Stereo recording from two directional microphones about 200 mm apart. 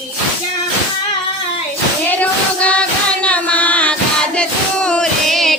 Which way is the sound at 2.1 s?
5° left (ahead or behind).